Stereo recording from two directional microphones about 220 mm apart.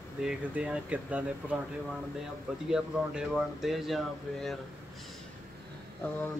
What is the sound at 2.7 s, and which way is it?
Speech, 5° right (ahead or behind).